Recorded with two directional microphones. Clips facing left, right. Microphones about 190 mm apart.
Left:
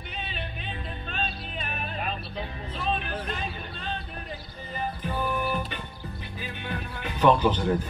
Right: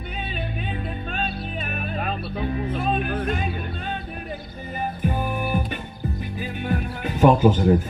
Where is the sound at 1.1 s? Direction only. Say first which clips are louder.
Right 3 dB; 50° right (ahead or behind).